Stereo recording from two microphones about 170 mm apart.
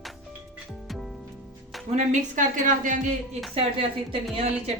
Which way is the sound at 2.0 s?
50° right (ahead or behind).